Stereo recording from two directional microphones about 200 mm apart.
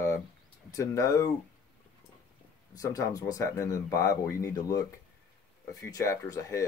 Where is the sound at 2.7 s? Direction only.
15° left (ahead or behind).